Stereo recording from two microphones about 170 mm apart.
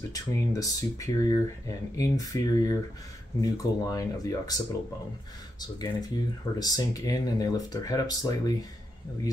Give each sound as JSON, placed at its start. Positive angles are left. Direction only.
{"t": 0.1, "sound": "speech", "side_deg": 20}